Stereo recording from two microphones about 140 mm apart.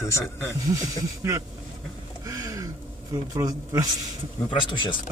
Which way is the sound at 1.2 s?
20° right (ahead or behind).